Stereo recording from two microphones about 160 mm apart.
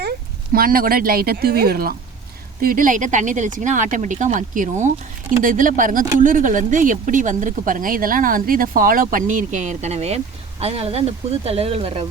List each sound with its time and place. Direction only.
0.5 s speech: 65° right (ahead or behind); by 12.0 s 35° right (ahead or behind)